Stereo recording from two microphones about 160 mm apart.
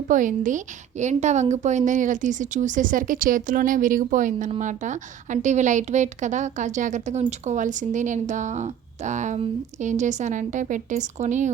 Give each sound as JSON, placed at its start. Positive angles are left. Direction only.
{"t": 0.1, "sound": "a woman's voice", "side_deg": -55}